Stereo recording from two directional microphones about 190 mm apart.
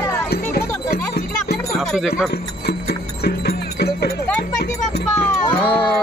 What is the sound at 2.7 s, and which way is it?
Music, 55° left (ahead or behind).